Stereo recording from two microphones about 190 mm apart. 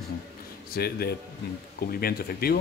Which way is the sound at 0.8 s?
55° left (ahead or behind).